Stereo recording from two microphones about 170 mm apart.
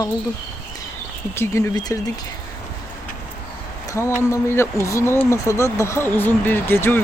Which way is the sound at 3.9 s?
15° left (ahead or behind).